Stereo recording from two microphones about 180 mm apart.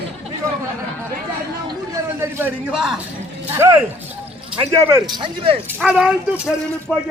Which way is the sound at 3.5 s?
15° right (ahead or behind).